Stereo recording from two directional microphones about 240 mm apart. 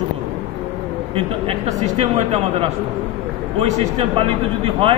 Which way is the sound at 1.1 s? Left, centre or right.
Right.